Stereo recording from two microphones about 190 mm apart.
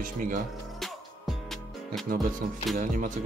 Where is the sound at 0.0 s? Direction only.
45° right (ahead or behind).